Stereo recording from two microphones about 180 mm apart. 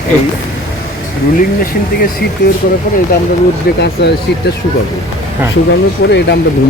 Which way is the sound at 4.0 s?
70° left (ahead or behind).